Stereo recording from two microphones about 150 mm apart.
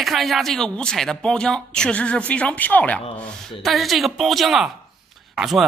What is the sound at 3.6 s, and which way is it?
A man's voice, centre (ahead or behind).